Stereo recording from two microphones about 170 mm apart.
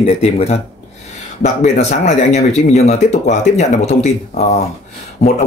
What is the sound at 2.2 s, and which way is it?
Speech, 40° left (ahead or behind).